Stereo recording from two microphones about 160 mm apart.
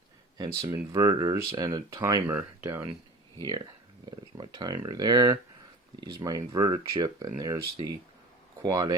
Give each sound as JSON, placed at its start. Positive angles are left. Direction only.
{"t": 0.3, "sound": "speech", "side_deg": -25}
{"t": 4.4, "sound": "speech", "side_deg": -25}
{"t": 8.6, "sound": "speech", "side_deg": -25}